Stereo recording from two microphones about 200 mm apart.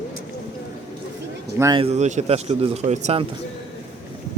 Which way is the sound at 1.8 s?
35° right (ahead or behind).